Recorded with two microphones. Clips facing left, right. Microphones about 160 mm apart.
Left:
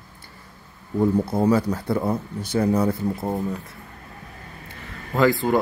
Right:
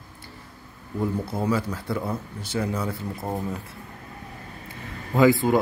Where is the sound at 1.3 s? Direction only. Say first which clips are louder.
Left 6 dB; 40° left (ahead or behind).